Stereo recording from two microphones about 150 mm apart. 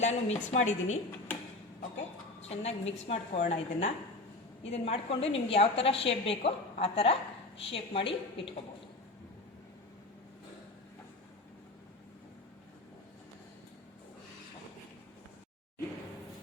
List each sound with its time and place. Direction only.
0.0 s a woman's voice: 50° left (ahead or behind)
2.5 s a woman's voice: 45° left (ahead or behind)